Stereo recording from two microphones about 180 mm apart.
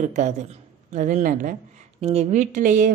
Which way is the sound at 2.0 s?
35° right (ahead or behind).